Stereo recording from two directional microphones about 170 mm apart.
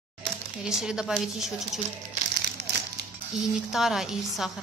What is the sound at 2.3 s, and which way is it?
Crumpling, 75° right (ahead or behind).